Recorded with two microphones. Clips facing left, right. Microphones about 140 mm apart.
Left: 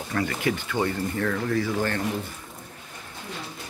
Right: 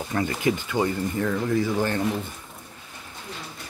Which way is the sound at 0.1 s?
20° right (ahead or behind).